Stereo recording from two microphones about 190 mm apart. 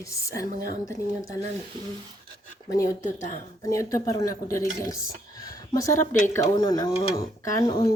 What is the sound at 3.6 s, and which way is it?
Speech, 15° left (ahead or behind).